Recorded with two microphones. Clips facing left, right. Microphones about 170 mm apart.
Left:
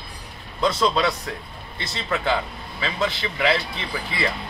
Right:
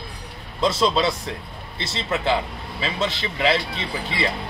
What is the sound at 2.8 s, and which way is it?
Speech, 25° right (ahead or behind).